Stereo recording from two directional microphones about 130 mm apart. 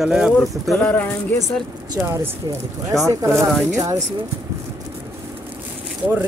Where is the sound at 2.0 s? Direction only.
15° right (ahead or behind).